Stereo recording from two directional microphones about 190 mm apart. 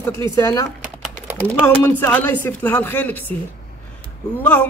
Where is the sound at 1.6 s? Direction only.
10° left (ahead or behind).